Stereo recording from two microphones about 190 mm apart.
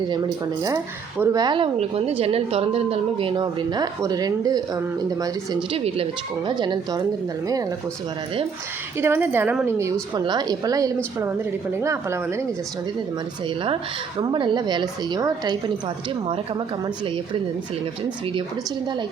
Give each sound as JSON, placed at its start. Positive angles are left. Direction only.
{"t": 1.2, "sound": "a woman's voice", "side_deg": -20}
{"t": 5.7, "sound": "a woman's voice", "side_deg": -30}
{"t": 9.0, "sound": "a woman's voice", "side_deg": -10}
{"t": 14.2, "sound": "a woman's voice", "side_deg": -25}